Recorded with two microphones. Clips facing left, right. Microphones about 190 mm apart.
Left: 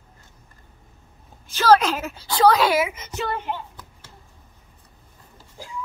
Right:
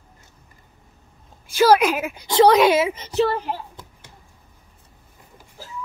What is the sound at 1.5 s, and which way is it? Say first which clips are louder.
A woman's voice: right 2 dB; 10° right (ahead or behind).